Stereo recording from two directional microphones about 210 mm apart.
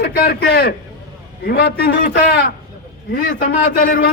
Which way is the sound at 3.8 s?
45° left (ahead or behind).